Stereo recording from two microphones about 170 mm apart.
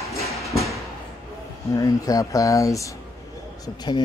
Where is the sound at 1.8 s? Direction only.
20° left (ahead or behind).